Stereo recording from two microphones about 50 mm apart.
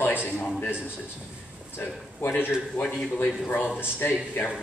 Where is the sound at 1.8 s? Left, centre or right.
Left.